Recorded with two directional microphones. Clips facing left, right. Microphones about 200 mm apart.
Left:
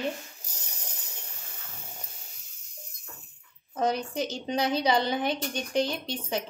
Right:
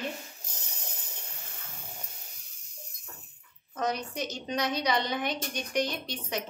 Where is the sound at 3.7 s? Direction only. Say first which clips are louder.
Left 4 dB; 30° left (ahead or behind).